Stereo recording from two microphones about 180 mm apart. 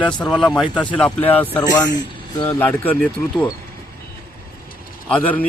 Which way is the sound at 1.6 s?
20° left (ahead or behind).